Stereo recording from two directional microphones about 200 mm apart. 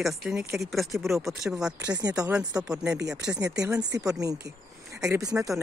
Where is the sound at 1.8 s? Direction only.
20° right (ahead or behind).